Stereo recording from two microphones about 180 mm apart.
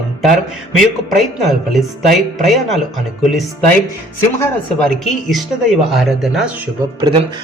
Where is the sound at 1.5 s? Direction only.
Centre (ahead or behind).